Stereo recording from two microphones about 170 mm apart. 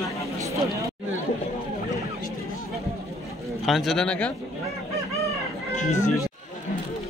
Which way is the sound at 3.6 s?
Centre (ahead or behind).